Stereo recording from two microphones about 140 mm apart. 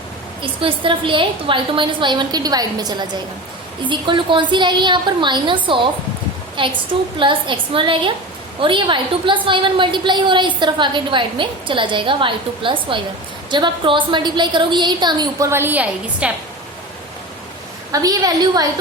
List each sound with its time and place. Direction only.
0.4 s a woman's voice: 35° right (ahead or behind)
15.4 s a woman's voice: 15° right (ahead or behind)
17.9 s a woman's voice: 25° right (ahead or behind)